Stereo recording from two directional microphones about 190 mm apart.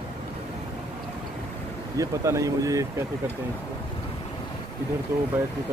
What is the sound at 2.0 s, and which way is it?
Speech, 15° right (ahead or behind).